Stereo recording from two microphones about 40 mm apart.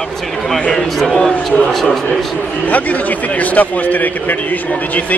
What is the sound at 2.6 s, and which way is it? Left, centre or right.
A man's voice, left.